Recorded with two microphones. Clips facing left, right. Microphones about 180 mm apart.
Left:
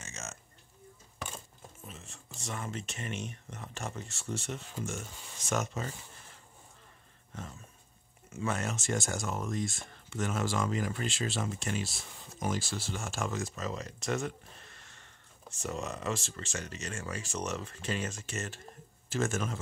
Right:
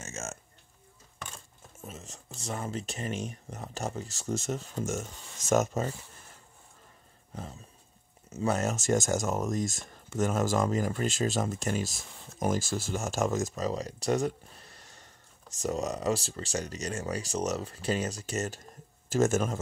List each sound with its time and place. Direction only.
0.0 s a sound: 45° right (ahead or behind)
1.9 s speech: 40° right (ahead or behind)
8.3 s speech: 40° right (ahead or behind)